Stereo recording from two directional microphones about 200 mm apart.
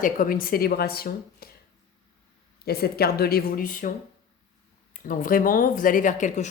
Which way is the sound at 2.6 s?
50° left (ahead or behind).